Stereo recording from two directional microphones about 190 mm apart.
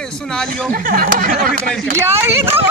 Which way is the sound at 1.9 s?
15° right (ahead or behind).